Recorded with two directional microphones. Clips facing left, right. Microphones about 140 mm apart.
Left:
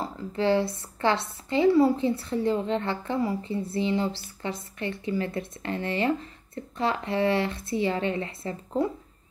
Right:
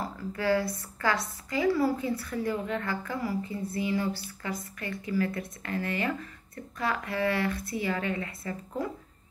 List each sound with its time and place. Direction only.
0.0 s speech: 25° left (ahead or behind)